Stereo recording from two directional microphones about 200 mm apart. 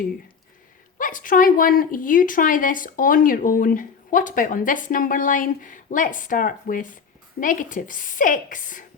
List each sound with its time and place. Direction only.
0.9 s a woman's voice: 40° left (ahead or behind)